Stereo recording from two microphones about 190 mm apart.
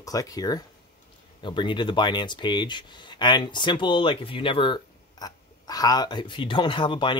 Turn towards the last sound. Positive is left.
turn(degrees=25)  # may be behind; listen again after turning